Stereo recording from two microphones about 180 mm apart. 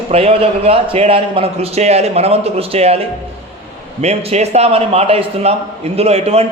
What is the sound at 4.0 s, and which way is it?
A man's voice, 35° right (ahead or behind).